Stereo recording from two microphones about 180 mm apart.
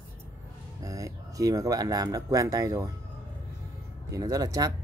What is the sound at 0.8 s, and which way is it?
Speech, 20° right (ahead or behind).